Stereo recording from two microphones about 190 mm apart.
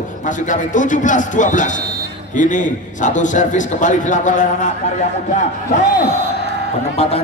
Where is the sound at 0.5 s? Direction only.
40° left (ahead or behind).